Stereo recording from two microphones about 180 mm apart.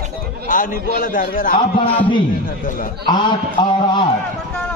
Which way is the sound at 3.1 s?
25° left (ahead or behind).